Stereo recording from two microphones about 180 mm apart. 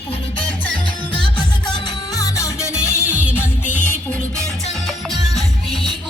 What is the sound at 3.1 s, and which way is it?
Music, 10° right (ahead or behind).